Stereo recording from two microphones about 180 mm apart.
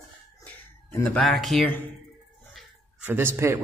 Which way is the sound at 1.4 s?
Centre (ahead or behind).